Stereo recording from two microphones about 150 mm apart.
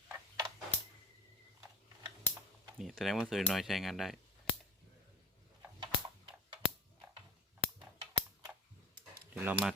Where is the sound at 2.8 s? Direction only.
Centre (ahead or behind).